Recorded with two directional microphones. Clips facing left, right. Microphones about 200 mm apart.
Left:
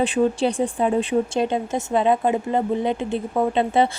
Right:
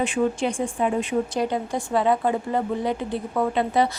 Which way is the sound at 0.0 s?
35° left (ahead or behind).